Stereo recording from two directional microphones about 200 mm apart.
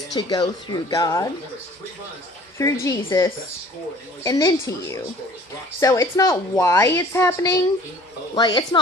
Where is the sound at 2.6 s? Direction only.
15° left (ahead or behind).